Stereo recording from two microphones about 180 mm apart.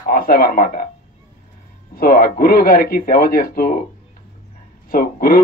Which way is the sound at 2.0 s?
55° left (ahead or behind).